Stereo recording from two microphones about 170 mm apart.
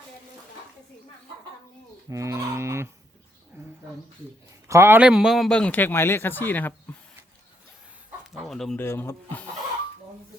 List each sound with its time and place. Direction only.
2.0 s fowl: 15° right (ahead or behind)
3.5 s a sound: 15° right (ahead or behind)
4.7 s a man's voice: 15° right (ahead or behind); by 6.7 s 10° left (ahead or behind)
8.3 s speech: centre (ahead or behind)
8.8 s a man's voice: 15° left (ahead or behind)